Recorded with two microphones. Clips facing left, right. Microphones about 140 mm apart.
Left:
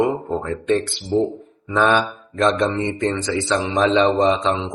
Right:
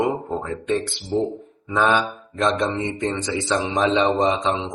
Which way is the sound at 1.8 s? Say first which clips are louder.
Left 2 dB; 15° right (ahead or behind).